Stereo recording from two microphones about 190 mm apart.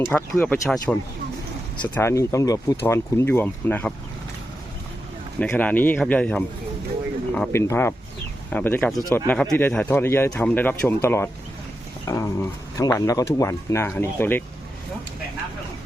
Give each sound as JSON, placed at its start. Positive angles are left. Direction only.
{"t": 0.0, "sound": "speech", "side_deg": 10}
{"t": 2.0, "sound": "speech", "side_deg": 15}
{"t": 5.4, "sound": "speech", "side_deg": 5}